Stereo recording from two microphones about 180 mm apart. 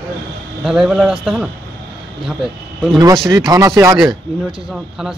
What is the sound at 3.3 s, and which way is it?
Speech, 20° right (ahead or behind).